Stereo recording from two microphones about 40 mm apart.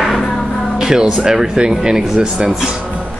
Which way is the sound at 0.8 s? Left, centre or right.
Centre.